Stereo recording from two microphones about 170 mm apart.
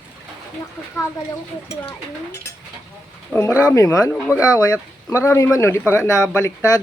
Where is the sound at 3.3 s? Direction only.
15° left (ahead or behind).